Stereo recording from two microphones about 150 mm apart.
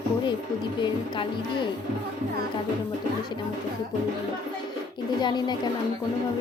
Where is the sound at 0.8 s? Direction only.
30° left (ahead or behind).